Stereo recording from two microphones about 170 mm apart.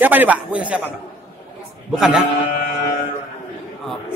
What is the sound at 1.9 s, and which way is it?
Speech, centre (ahead or behind).